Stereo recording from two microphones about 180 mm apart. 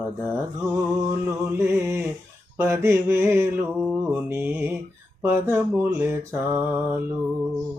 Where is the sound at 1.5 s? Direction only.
15° right (ahead or behind).